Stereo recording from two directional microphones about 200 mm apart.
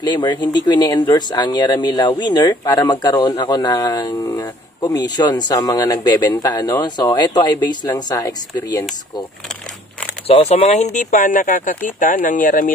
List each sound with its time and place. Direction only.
0.0 s speech: 25° left (ahead or behind)
10.2 s speech: 30° left (ahead or behind)